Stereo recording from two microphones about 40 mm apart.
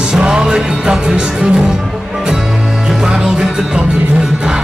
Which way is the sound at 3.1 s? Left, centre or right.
Centre.